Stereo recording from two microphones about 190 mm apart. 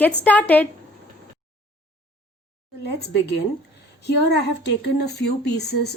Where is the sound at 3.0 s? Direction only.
60° left (ahead or behind).